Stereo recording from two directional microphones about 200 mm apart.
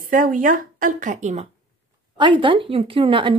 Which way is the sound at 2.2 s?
25° right (ahead or behind).